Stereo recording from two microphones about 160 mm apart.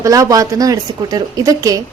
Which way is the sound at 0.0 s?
20° right (ahead or behind).